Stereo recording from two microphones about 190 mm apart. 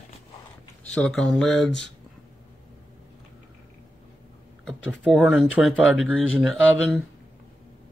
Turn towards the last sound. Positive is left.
turn(degrees=0)  # may be behind; listen again after turning